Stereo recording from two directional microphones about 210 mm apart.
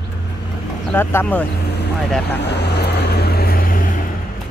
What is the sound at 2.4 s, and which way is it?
Vehicle, 55° left (ahead or behind).